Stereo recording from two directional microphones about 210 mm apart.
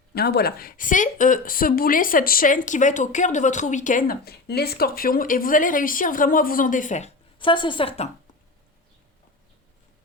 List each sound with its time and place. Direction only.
0.1 s speech: 50° left (ahead or behind)
7.3 s a woman's voice: 25° left (ahead or behind)